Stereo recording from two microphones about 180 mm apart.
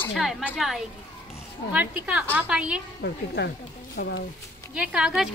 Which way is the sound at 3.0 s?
65° left (ahead or behind).